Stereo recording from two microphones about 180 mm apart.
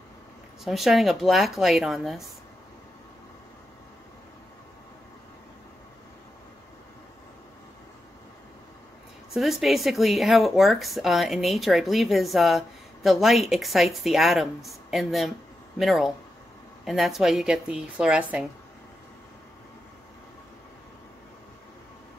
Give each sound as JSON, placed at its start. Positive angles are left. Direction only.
{"t": 0.7, "sound": "speech", "side_deg": 0}
{"t": 9.3, "sound": "speech", "side_deg": 0}